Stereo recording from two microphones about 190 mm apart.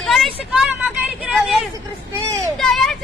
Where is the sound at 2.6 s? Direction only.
Centre (ahead or behind).